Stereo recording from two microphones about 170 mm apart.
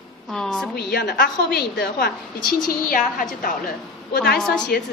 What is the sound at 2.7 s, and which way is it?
Speech, 55° left (ahead or behind).